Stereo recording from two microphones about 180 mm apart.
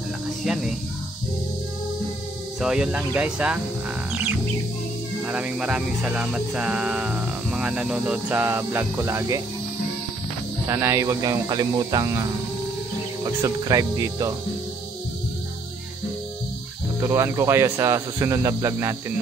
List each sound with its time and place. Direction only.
0.4 s speech: 5° right (ahead or behind)
2.6 s music: 5° right (ahead or behind)
10.7 s music: 15° right (ahead or behind)
17.0 s music: 15° right (ahead or behind)